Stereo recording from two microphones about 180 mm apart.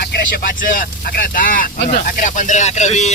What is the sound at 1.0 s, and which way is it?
Speech, 50° left (ahead or behind).